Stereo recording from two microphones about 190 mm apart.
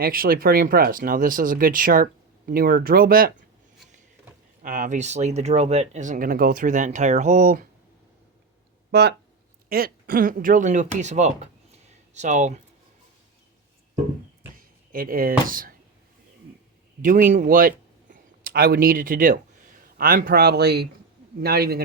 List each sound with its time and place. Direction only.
0.0 s speech: 50° right (ahead or behind)
4.6 s speech: 45° right (ahead or behind)
8.9 s speech: 60° right (ahead or behind); by 12.6 s 40° right (ahead or behind)
14.9 s speech: 50° right (ahead or behind)
17.0 s speech: 45° right (ahead or behind)